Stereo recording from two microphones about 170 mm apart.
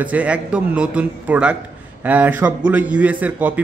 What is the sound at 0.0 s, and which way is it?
A man's voice, 10° right (ahead or behind).